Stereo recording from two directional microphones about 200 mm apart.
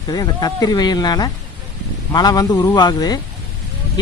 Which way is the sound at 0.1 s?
20° left (ahead or behind).